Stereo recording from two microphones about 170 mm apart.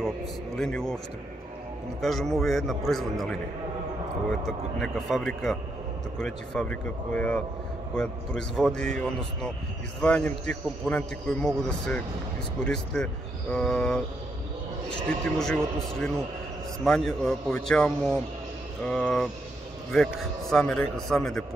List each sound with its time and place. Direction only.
0.6 s a man's voice: 5° left (ahead or behind)
2.0 s a man's voice: centre (ahead or behind)
15.3 s a man's voice: 5° left (ahead or behind)